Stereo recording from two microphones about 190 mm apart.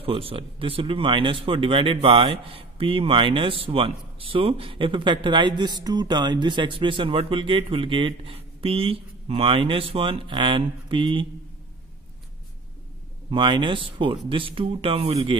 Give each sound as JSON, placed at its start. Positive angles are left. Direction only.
{"t": 0.0, "sound": "speech", "side_deg": -30}
{"t": 13.3, "sound": "speech", "side_deg": -25}